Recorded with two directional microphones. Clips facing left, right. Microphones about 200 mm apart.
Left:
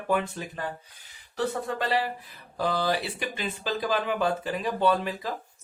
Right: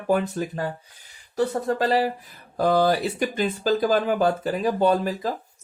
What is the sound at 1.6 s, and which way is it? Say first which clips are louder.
Speech: right 6 dB; 40° right (ahead or behind).